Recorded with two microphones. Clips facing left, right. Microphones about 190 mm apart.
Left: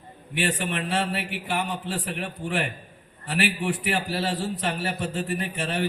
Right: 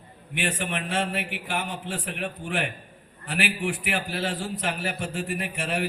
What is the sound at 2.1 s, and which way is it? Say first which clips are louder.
Speech: even; 35° left (ahead or behind).